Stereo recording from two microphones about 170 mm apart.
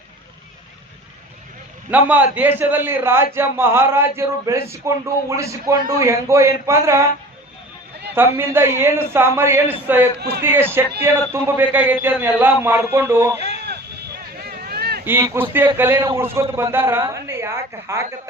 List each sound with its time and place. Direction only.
1.9 s a man's voice: 10° right (ahead or behind)
8.1 s a man's voice: 10° right (ahead or behind)
10.2 s a man's voice: 75° right (ahead or behind)
10.4 s a man's voice: 15° right (ahead or behind)
14.4 s a sound: 70° right (ahead or behind)
15.0 s a man's voice: 15° right (ahead or behind)